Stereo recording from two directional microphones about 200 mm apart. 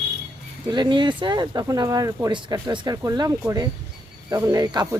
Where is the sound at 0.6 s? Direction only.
20° right (ahead or behind).